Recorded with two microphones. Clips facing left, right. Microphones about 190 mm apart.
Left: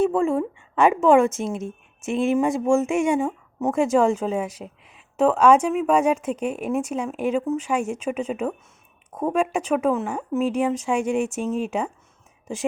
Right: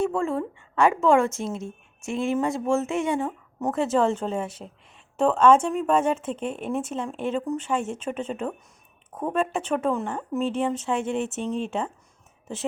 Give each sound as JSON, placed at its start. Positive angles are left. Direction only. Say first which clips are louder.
{"t": 0.0, "sound": "a woman's voice", "louder": "left 5 dB", "side_deg": 15}